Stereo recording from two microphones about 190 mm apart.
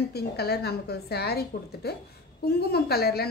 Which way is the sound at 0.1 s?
55° left (ahead or behind).